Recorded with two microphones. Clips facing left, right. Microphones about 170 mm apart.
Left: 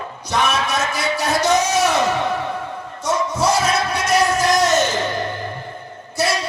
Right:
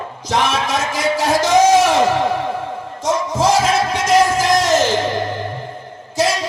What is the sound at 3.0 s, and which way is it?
Music, 90° right.